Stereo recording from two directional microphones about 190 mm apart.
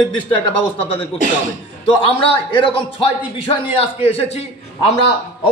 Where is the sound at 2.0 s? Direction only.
25° left (ahead or behind).